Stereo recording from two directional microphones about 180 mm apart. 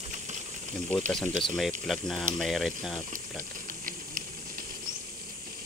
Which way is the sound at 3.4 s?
50° right (ahead or behind).